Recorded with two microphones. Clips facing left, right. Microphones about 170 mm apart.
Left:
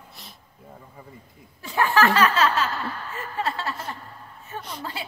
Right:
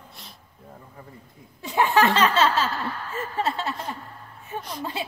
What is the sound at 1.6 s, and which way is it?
Laughter, 20° right (ahead or behind).